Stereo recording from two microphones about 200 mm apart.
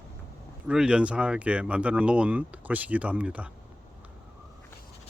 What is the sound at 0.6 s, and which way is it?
Speech, 5° right (ahead or behind).